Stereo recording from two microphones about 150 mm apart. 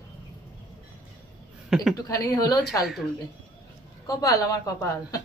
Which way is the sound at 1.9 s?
25° left (ahead or behind).